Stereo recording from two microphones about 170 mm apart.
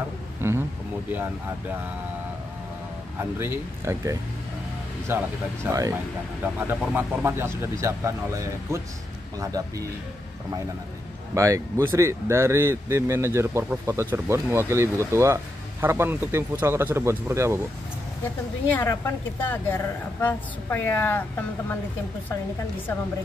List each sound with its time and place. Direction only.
0.4 s speech: 15° right (ahead or behind)
3.2 s a man's voice: 15° right (ahead or behind)
11.3 s speech: 20° right (ahead or behind)
18.7 s a woman's voice: 15° left (ahead or behind)